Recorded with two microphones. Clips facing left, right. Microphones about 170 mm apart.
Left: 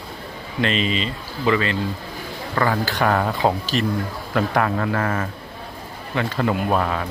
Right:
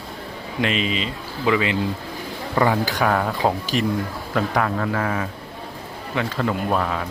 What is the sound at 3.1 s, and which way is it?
Speech, centre (ahead or behind).